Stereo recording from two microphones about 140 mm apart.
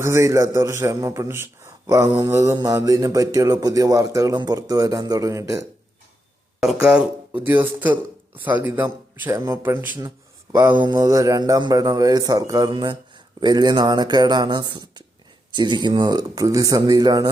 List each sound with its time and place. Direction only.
0.0 s a man's voice: 20° right (ahead or behind)
6.8 s a man's voice: 5° right (ahead or behind); by 17.2 s 30° right (ahead or behind)